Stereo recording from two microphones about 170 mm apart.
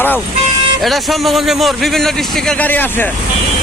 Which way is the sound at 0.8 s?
Centre (ahead or behind).